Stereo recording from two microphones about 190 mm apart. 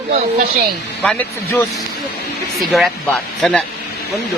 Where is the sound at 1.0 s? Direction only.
5° left (ahead or behind).